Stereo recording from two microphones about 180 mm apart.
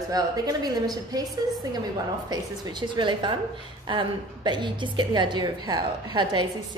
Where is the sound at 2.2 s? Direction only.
20° right (ahead or behind).